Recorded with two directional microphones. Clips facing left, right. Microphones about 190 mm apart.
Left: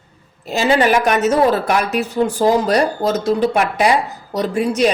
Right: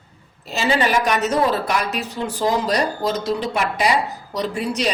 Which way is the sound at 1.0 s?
50° left (ahead or behind).